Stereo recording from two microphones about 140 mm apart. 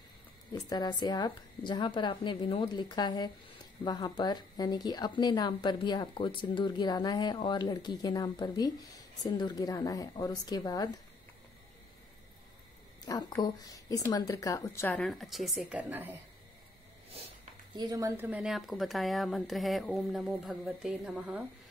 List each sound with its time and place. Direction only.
0.5 s a woman's voice: 30° left (ahead or behind)
13.0 s speech: 25° left (ahead or behind)
15.0 s speech: centre (ahead or behind)
17.7 s speech: 25° right (ahead or behind); by 21.5 s 5° right (ahead or behind)